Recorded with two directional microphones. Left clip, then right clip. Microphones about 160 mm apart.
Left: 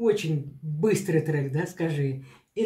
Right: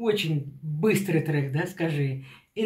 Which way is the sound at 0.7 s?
Centre (ahead or behind).